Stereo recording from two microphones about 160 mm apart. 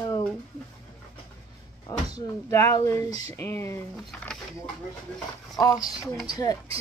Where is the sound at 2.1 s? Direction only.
20° left (ahead or behind).